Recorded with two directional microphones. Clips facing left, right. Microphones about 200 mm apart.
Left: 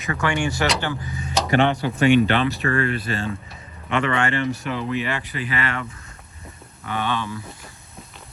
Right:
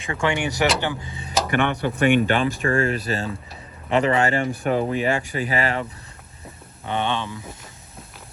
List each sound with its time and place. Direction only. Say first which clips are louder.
0.1 s speech: even; 20° right (ahead or behind)
1.5 s a man's voice: left 4 dB; 55° right (ahead or behind); by 4.4 s 40° right (ahead or behind)
4.5 s speech: right 4 dB; 50° right (ahead or behind)
6.8 s speech: right 1 dB; 25° right (ahead or behind)